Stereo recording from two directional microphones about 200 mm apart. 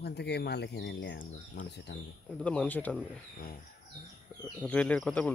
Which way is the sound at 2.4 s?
5° left (ahead or behind).